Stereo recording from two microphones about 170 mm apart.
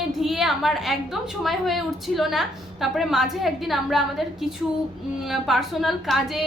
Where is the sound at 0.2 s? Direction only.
Centre (ahead or behind).